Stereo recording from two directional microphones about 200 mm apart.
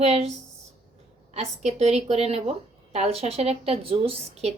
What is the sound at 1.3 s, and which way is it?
A woman's voice, 35° right (ahead or behind).